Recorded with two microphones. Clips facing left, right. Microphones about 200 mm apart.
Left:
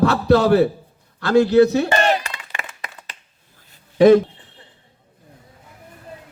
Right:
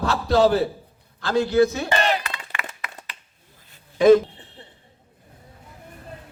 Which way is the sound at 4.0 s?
65° left (ahead or behind).